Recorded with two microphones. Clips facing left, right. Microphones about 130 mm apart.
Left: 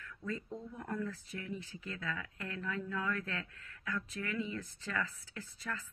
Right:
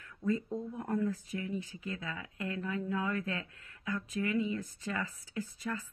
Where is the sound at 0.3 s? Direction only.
15° right (ahead or behind).